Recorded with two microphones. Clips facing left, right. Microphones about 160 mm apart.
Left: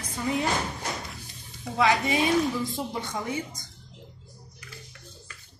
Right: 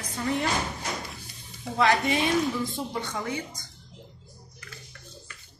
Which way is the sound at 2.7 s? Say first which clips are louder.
Even; 15° left (ahead or behind).